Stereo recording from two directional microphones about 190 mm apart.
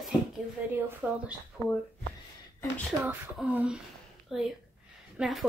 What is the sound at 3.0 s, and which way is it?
Speech, 10° right (ahead or behind).